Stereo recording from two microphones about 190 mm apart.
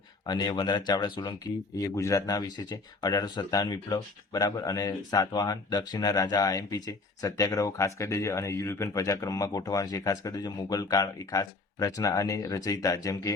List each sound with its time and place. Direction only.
0.3 s speech: 20° left (ahead or behind)